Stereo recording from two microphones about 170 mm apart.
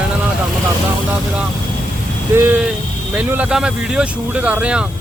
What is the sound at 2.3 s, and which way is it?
Speech, 15° right (ahead or behind).